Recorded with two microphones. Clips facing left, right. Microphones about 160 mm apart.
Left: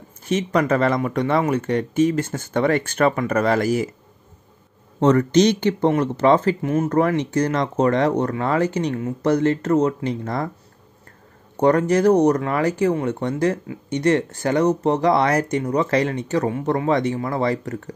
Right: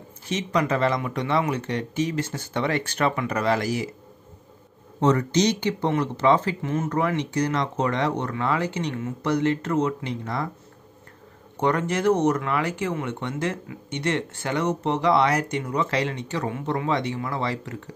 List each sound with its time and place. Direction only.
0.3 s speech: 50° left (ahead or behind)
5.0 s speech: 55° left (ahead or behind)
11.5 s speech: 40° left (ahead or behind)